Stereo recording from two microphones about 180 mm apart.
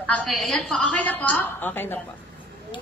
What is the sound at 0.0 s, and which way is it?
A woman's voice, 5° left (ahead or behind).